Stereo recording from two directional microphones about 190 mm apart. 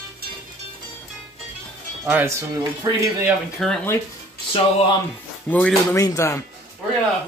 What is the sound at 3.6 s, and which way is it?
Speech, centre (ahead or behind).